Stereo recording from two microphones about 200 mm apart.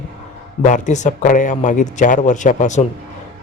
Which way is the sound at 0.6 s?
35° left (ahead or behind).